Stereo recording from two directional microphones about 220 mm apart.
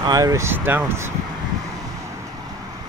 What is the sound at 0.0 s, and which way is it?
Speech, 15° right (ahead or behind).